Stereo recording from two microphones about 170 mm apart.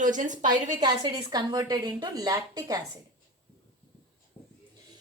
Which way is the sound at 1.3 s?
25° right (ahead or behind).